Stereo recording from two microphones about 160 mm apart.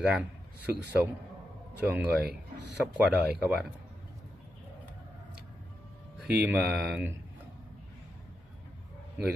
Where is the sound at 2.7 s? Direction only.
5° right (ahead or behind).